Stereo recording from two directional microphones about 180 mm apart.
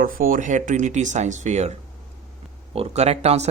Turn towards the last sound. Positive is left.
turn(degrees=-35)  # may be behind; listen again after turning